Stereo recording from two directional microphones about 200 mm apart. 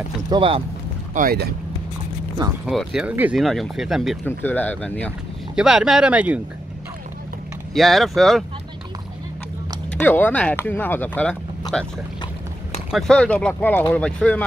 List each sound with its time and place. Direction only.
0.3 s speech: 25° right (ahead or behind)
1.1 s speech: 50° right (ahead or behind)
2.6 s speech: centre (ahead or behind)
4.3 s speech: 10° left (ahead or behind); by 6.4 s 5° right (ahead or behind)
7.7 s speech: centre (ahead or behind)
9.9 s speech: 10° left (ahead or behind)
12.9 s speech: centre (ahead or behind)